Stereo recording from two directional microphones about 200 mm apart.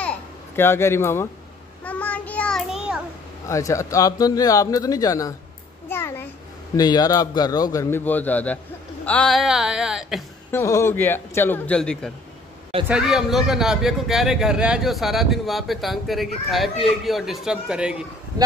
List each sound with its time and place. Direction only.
0.6 s speech: 10° left (ahead or behind)
1.9 s child singing: 5° left (ahead or behind)
3.4 s speech: 15° left (ahead or behind)
5.9 s a sound: 10° left (ahead or behind)
6.8 s speech: 20° left (ahead or behind); by 10.2 s centre (ahead or behind)
10.5 s speech: 15° left (ahead or behind); by 18.0 s 5° right (ahead or behind)